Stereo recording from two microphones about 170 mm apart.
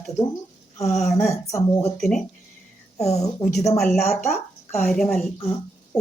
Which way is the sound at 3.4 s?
20° left (ahead or behind).